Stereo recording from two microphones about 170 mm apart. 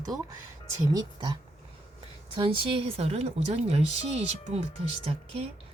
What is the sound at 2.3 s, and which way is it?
Speech, 35° right (ahead or behind).